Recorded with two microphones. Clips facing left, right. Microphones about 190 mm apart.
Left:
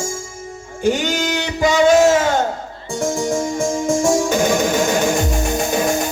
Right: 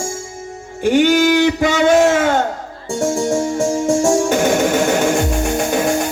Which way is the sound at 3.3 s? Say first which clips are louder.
Right 3 dB; 30° right (ahead or behind).